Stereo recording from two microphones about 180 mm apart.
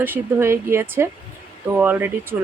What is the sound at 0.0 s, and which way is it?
Speech, 10° right (ahead or behind).